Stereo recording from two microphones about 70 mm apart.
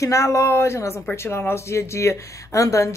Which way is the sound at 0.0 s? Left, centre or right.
Left.